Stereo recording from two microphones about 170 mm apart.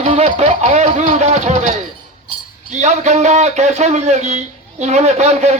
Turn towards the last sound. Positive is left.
turn(degrees=-40)  # may be behind; listen again after turning